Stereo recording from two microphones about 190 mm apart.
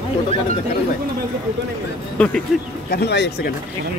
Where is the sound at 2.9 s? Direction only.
60° left (ahead or behind).